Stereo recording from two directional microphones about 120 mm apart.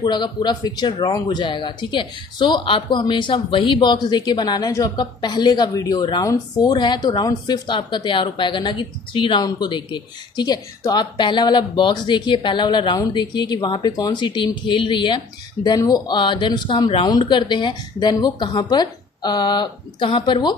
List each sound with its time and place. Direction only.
0.0 s speech: 35° left (ahead or behind)